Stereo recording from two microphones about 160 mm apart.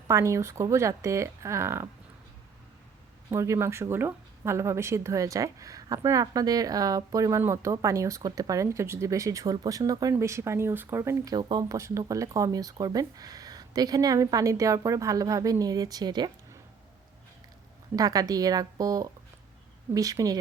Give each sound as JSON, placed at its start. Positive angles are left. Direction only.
{"t": 0.1, "sound": "speech", "side_deg": -20}
{"t": 3.2, "sound": "speech", "side_deg": -20}
{"t": 11.3, "sound": "speech", "side_deg": -25}
{"t": 17.9, "sound": "speech", "side_deg": -20}